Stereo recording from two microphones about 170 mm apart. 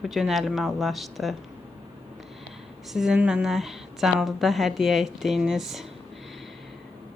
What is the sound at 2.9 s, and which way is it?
A woman's voice, 5° right (ahead or behind).